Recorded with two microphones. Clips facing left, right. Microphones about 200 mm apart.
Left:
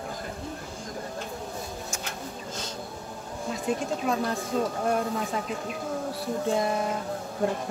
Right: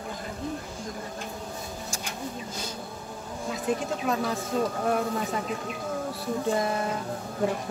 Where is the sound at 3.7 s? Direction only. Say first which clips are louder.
Even; centre (ahead or behind).